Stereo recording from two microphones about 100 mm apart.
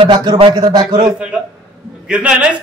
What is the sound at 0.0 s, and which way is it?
A man's voice, 50° right (ahead or behind).